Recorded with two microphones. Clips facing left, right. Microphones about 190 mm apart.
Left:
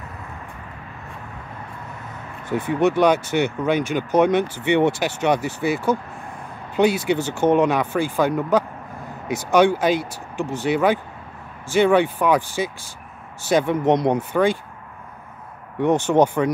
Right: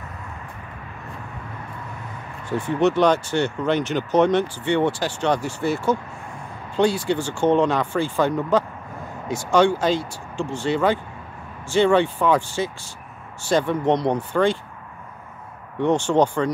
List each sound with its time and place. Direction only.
2.5 s speech: 15° left (ahead or behind)
6.8 s speech: 15° left (ahead or behind)
14.1 s speech: 5° left (ahead or behind)
15.8 s speech: 15° left (ahead or behind)